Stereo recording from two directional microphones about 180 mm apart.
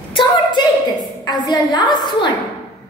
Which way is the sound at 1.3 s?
25° left (ahead or behind).